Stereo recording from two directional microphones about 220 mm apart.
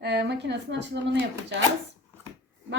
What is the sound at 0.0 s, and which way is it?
Speech, 50° right (ahead or behind).